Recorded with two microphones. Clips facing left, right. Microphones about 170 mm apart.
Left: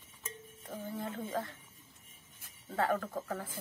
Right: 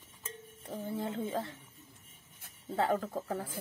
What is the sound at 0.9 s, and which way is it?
Speech, 25° right (ahead or behind).